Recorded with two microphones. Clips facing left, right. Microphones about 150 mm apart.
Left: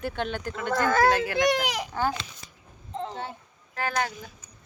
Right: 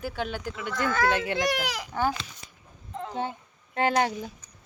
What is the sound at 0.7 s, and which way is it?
Speech, 40° left (ahead or behind).